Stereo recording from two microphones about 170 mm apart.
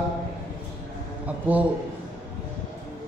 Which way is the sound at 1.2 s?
10° right (ahead or behind).